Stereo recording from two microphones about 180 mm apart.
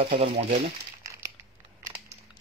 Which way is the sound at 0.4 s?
35° right (ahead or behind).